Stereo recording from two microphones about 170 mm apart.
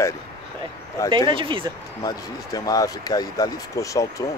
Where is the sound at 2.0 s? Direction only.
20° left (ahead or behind).